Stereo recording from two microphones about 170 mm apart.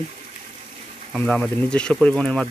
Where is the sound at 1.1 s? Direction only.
5° left (ahead or behind).